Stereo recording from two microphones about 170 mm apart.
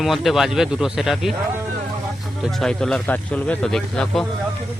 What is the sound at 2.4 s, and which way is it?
Speech, centre (ahead or behind).